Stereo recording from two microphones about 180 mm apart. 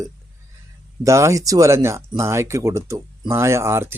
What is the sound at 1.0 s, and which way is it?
Speech, 15° right (ahead or behind).